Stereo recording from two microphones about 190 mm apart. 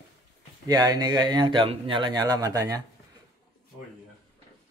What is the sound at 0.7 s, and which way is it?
Speech, 20° right (ahead or behind).